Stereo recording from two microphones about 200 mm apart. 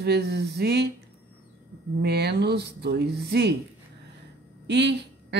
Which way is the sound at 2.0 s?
55° right (ahead or behind).